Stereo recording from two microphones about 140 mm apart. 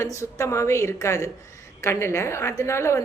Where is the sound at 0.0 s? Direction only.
20° left (ahead or behind).